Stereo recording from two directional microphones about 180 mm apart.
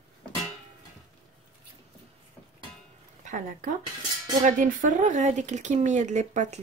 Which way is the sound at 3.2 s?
45° right (ahead or behind).